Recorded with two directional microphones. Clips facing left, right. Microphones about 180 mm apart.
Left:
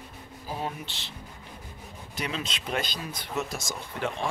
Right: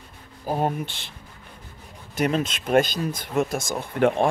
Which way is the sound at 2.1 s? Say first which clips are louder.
Right 10 dB; 50° right (ahead or behind).